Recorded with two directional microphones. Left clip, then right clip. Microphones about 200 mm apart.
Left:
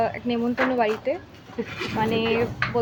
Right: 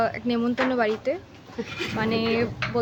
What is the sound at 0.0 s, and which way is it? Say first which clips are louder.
A woman's voice: even; 20° right (ahead or behind).